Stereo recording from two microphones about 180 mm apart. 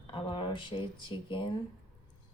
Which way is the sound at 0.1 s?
25° left (ahead or behind).